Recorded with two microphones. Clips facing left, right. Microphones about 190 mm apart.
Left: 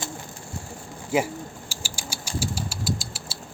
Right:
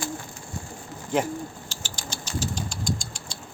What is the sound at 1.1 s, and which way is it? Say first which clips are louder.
Speech: left 1 dB; 10° left (ahead or behind).